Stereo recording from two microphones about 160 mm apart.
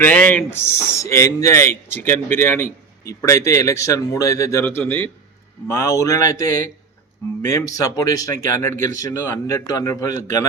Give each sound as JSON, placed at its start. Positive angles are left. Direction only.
{"t": 0.0, "sound": "speech", "side_deg": 5}
{"t": 2.6, "sound": "a sound", "side_deg": 85}
{"t": 3.2, "sound": "a man's voice", "side_deg": 20}